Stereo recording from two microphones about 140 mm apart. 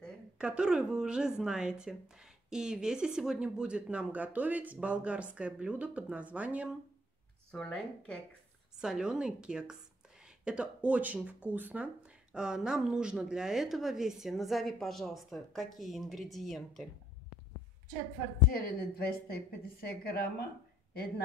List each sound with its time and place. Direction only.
0.4 s speech: 5° right (ahead or behind)
7.5 s speech: 5° left (ahead or behind)
8.7 s speech: 5° right (ahead or behind)
18.5 s a woman's voice: 90° left